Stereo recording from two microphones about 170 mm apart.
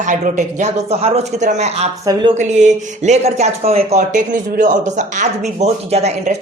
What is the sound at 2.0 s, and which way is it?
Speech, 25° right (ahead or behind).